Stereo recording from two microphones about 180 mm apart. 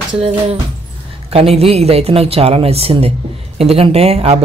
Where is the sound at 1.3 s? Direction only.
35° right (ahead or behind).